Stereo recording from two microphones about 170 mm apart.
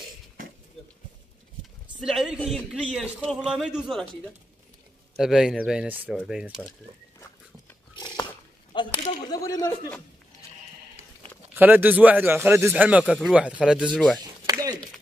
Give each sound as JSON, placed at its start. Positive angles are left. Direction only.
{"t": 2.0, "sound": "a man's voice", "side_deg": -5}
{"t": 7.9, "sound": "biting", "side_deg": 25}
{"t": 8.7, "sound": "speech", "side_deg": 25}
{"t": 11.5, "sound": "speech", "side_deg": -10}
{"t": 14.4, "sound": "chop", "side_deg": -20}